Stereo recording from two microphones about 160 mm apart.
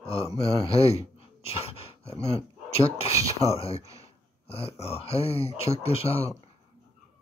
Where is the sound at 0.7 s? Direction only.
40° left (ahead or behind).